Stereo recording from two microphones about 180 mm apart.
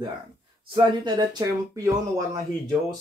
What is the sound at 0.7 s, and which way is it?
Speech, 25° right (ahead or behind).